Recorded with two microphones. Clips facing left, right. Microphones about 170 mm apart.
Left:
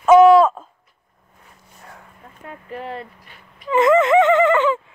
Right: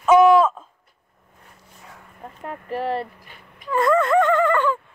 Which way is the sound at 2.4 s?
40° right (ahead or behind).